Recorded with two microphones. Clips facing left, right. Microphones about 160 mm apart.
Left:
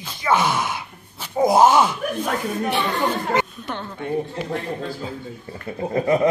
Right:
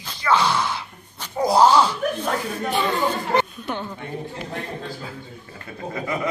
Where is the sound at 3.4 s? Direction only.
5° right (ahead or behind).